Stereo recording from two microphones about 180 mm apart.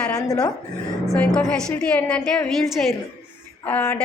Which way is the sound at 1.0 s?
5° left (ahead or behind).